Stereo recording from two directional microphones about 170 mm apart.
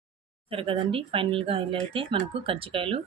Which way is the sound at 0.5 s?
30° right (ahead or behind).